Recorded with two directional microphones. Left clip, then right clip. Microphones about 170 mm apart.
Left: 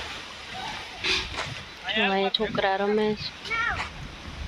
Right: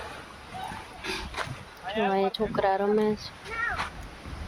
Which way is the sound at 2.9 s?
15° right (ahead or behind).